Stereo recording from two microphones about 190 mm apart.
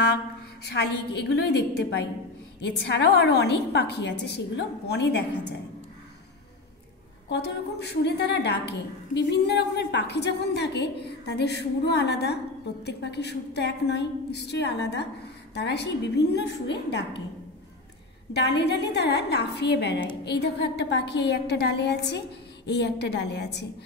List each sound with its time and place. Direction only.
0.7 s a woman's voice: 60° left (ahead or behind)
7.2 s a woman's voice: 60° left (ahead or behind)
18.3 s a woman's voice: 65° left (ahead or behind)